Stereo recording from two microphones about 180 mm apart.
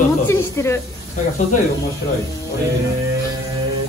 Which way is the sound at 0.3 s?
15° left (ahead or behind).